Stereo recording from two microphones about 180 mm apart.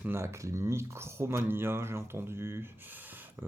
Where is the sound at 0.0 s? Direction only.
15° right (ahead or behind).